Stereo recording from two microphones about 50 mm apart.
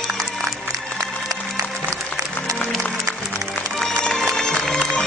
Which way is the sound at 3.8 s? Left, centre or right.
Centre.